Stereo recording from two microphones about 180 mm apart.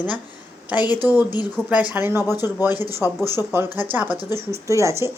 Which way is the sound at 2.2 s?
20° left (ahead or behind).